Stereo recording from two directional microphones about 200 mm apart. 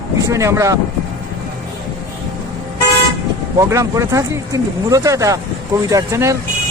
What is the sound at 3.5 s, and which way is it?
Speech, 15° right (ahead or behind).